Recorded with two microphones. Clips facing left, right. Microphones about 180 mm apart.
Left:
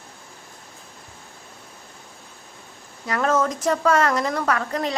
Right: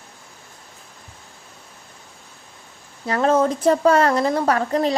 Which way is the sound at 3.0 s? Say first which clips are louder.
Right 4 dB; 30° right (ahead or behind).